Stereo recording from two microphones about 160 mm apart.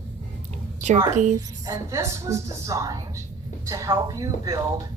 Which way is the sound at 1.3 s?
20° right (ahead or behind).